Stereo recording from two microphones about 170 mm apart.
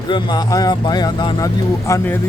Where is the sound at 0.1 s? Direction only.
25° left (ahead or behind).